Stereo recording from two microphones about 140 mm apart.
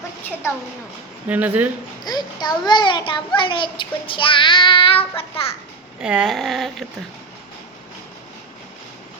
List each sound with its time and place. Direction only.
1.3 s speech: 10° right (ahead or behind)
2.0 s a child's voice: 30° left (ahead or behind)
6.0 s speech: 5° right (ahead or behind)